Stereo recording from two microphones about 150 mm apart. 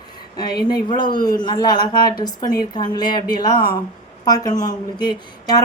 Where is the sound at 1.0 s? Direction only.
30° left (ahead or behind).